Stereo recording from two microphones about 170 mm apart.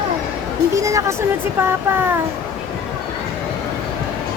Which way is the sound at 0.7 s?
20° right (ahead or behind).